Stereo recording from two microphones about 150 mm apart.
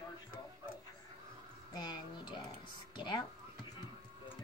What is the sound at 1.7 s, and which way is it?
Speech, 30° left (ahead or behind).